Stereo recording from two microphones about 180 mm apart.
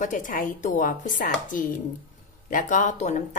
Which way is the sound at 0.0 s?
45° left (ahead or behind).